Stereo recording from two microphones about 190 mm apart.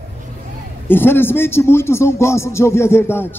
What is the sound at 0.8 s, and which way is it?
A man's voice, 10° left (ahead or behind).